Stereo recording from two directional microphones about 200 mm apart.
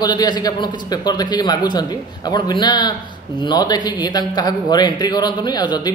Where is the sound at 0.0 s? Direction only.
20° left (ahead or behind).